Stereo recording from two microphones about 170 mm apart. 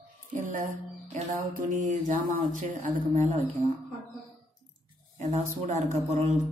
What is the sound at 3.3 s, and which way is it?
Speech, 35° right (ahead or behind).